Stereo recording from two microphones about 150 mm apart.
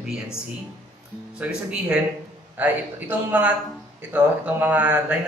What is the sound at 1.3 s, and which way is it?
Speech, 5° right (ahead or behind).